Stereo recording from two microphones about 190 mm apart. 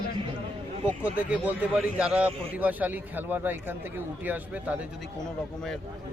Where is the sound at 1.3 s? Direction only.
10° right (ahead or behind).